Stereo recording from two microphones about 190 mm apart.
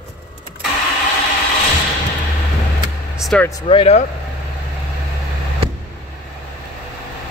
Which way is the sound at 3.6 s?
30° left (ahead or behind).